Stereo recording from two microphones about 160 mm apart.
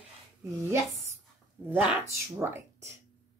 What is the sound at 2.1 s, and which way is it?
Speech, 15° right (ahead or behind).